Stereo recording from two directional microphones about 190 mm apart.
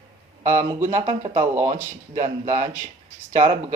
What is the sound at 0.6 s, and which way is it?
Speech, 40° right (ahead or behind).